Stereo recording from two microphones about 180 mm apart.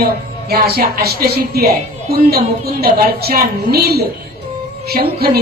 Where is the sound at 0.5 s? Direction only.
60° right (ahead or behind).